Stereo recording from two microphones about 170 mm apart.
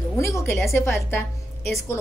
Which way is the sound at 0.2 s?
15° left (ahead or behind).